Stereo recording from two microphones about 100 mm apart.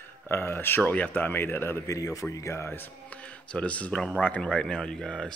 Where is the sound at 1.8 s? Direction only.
35° left (ahead or behind).